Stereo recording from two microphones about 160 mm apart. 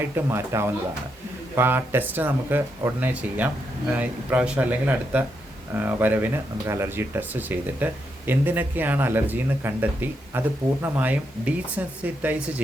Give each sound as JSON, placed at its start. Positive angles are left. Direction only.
{"t": 0.3, "sound": "speech", "side_deg": -15}